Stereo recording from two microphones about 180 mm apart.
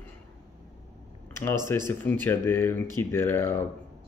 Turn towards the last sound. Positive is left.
turn(degrees=10)  # may be behind; listen again after turning